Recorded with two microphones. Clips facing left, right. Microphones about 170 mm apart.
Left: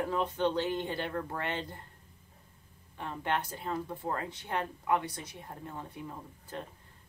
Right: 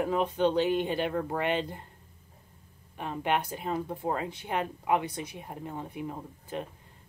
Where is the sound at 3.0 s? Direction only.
15° right (ahead or behind).